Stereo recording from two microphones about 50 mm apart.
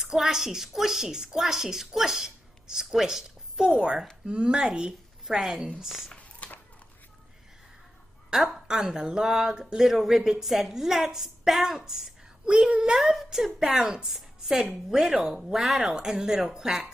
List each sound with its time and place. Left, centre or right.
0.0 s a woman's voice: centre
6.4 s a sound: left
8.5 s speech: centre
12.4 s speech: right
12.9 s speech: centre